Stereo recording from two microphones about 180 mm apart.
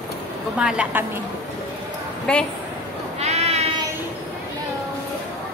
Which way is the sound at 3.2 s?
35° right (ahead or behind).